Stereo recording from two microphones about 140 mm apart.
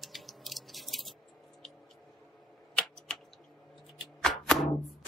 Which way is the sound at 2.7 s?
5° left (ahead or behind).